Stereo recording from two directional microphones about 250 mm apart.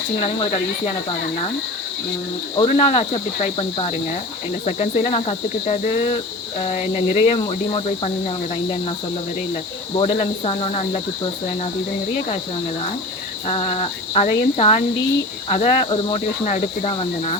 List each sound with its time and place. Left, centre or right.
0.2 s cricket: left
2.6 s cricket: left
10.0 s cricket: left
13.5 s cricket: left